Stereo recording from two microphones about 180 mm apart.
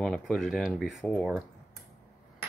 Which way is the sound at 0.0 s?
5° left (ahead or behind).